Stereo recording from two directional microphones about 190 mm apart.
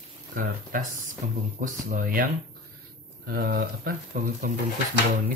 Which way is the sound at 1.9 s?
50° right (ahead or behind).